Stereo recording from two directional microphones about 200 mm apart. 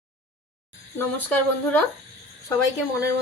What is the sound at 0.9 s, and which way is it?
Speech, 10° left (ahead or behind).